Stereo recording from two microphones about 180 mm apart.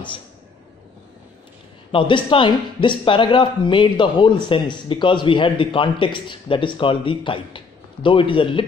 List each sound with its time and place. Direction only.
1.9 s a man's voice: 25° left (ahead or behind)